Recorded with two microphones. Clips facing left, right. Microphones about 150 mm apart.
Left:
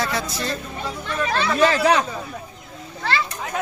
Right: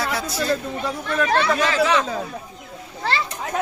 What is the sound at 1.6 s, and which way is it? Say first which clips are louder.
Speech: left 2 dB; 40° left (ahead or behind).